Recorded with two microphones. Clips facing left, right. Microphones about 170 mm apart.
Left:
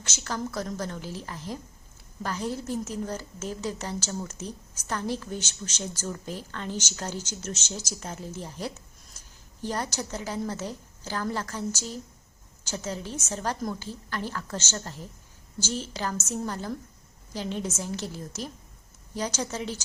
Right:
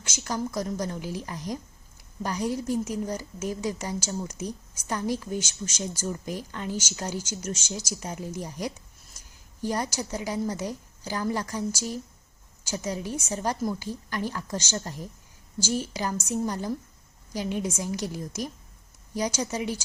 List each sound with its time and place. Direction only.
0.0 s a woman's voice: 10° right (ahead or behind)